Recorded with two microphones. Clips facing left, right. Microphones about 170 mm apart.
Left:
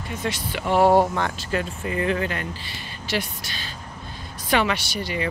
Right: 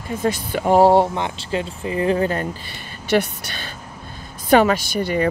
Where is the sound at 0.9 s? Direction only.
25° right (ahead or behind).